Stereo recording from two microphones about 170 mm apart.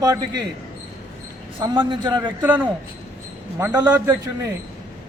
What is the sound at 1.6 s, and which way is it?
Speech, 30° right (ahead or behind).